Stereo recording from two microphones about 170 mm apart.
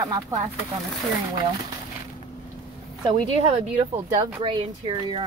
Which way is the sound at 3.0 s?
30° right (ahead or behind).